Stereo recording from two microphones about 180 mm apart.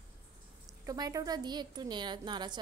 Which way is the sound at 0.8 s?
20° right (ahead or behind).